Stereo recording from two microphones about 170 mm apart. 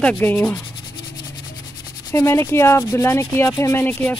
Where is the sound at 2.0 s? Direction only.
15° left (ahead or behind).